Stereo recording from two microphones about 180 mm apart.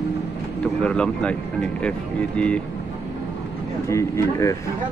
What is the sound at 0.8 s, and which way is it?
Speech, 5° left (ahead or behind).